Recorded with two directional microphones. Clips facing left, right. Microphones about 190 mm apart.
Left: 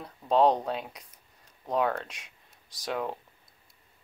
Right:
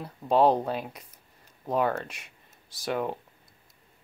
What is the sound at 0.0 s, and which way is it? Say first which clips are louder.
Speech: right 1 dB; 5° right (ahead or behind).